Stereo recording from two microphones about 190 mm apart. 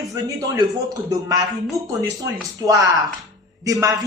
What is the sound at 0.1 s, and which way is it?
Speech, 15° right (ahead or behind).